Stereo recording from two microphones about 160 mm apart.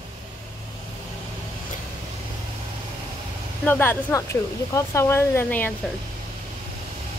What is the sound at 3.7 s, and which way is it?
Speech, 15° left (ahead or behind).